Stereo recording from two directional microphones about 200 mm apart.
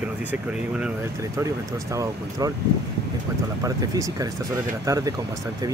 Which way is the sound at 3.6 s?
15° right (ahead or behind).